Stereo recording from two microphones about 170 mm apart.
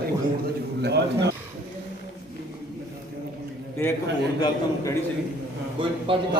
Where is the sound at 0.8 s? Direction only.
80° right.